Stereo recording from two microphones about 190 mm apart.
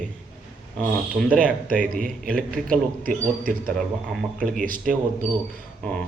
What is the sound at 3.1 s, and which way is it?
A man's voice, 50° right (ahead or behind).